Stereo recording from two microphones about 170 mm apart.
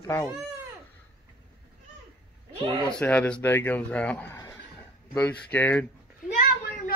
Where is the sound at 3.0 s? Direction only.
10° left (ahead or behind).